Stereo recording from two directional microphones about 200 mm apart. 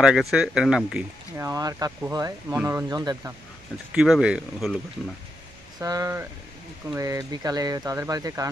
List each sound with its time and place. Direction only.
0.0 s speech: 5° right (ahead or behind)
1.3 s speech: 15° right (ahead or behind)
3.9 s speech: 5° right (ahead or behind)
5.8 s speech: 15° right (ahead or behind)